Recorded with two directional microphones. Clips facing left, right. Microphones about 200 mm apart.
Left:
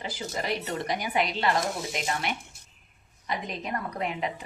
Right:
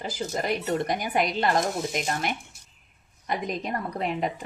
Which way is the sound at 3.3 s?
50° right (ahead or behind).